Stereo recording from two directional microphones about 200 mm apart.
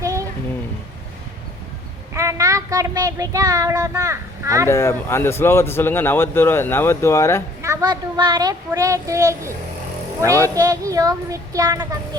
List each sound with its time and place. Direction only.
0.0 s a sound: 15° right (ahead or behind)
2.1 s speech: 15° right (ahead or behind)
4.7 s speech: 15° left (ahead or behind)
7.6 s speech: 15° right (ahead or behind)
10.5 s speech: 15° right (ahead or behind)